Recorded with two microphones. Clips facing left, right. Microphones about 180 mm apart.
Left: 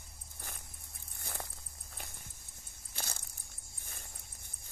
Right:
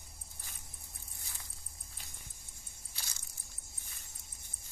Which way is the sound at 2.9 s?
55° left (ahead or behind).